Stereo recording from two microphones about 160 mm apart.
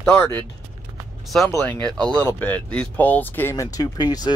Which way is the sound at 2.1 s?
20° right (ahead or behind).